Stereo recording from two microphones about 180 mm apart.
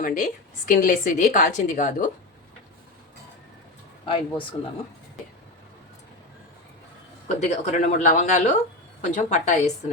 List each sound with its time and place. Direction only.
0.0 s a woman's voice: 50° left (ahead or behind)
4.0 s speech: 30° left (ahead or behind)
7.3 s a woman's voice: 40° left (ahead or behind)